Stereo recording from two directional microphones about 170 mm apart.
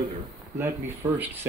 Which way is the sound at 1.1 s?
10° right (ahead or behind).